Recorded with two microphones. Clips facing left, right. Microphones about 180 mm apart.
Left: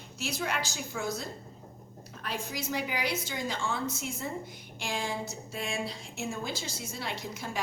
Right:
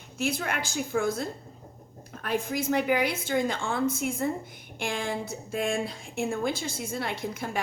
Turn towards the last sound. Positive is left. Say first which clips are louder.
# right 5 dB
turn(degrees=-55)  # may be behind; listen again after turning